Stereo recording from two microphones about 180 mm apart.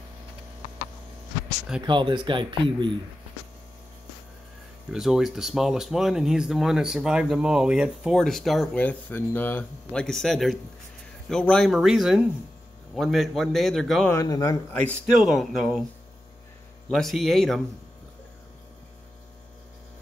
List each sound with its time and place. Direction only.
1.9 s speech: 25° right (ahead or behind)
4.9 s speech: centre (ahead or behind)
14.1 s speech: 20° left (ahead or behind)
14.7 s speech: 10° left (ahead or behind)
16.9 s speech: centre (ahead or behind)